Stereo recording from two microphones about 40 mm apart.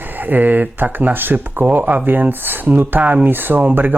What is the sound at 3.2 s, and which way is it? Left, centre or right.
Speech, right.